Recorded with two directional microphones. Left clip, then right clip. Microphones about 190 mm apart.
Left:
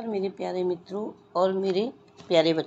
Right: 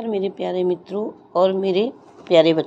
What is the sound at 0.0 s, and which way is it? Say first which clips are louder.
Speech: right 6 dB; 20° right (ahead or behind).